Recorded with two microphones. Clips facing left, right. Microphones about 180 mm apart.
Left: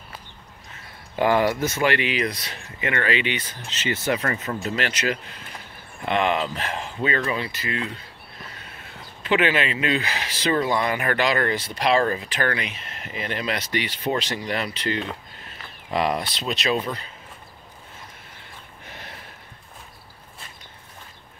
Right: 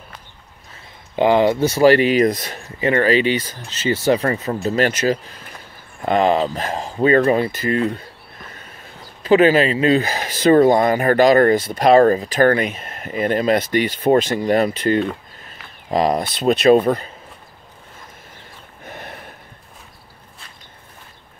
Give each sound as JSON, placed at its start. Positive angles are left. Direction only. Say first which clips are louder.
{"t": 1.1, "sound": "speech", "louder": "right 5 dB", "side_deg": -20}
{"t": 2.8, "sound": "speech", "louder": "right 9 dB", "side_deg": -35}
{"t": 9.2, "sound": "speech", "louder": "right 9 dB", "side_deg": -40}
{"t": 18.9, "sound": "a sound", "louder": "right 8 dB", "side_deg": -50}